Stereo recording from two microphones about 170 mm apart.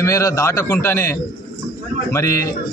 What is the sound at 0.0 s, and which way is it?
A man's voice, 20° left (ahead or behind).